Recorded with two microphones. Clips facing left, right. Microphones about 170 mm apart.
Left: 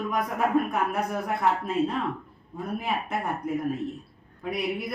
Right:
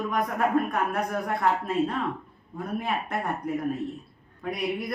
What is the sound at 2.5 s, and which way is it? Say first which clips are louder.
Speech: even; 5° left (ahead or behind).